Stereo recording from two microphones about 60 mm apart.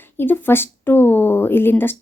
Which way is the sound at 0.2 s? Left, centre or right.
Left.